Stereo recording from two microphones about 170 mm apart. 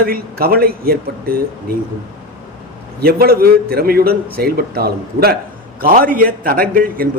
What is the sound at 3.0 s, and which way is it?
A man's voice, 60° right (ahead or behind).